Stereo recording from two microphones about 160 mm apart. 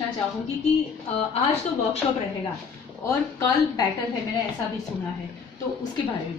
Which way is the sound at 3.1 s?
20° left (ahead or behind).